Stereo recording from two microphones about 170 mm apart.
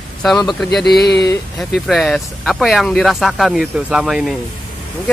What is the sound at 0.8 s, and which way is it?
Speech, 75° left (ahead or behind).